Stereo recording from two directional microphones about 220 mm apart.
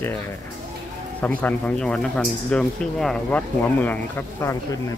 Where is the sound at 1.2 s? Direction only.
10° left (ahead or behind).